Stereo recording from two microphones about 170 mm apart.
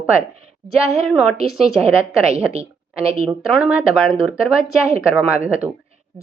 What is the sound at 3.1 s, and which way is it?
Speech, 35° right (ahead or behind).